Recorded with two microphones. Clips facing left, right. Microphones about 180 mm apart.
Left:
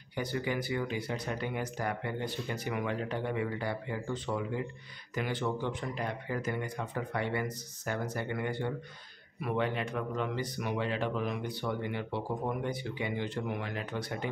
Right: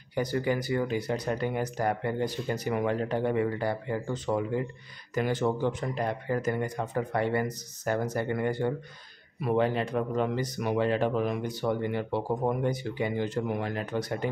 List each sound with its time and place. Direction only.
0.1 s speech: 40° right (ahead or behind)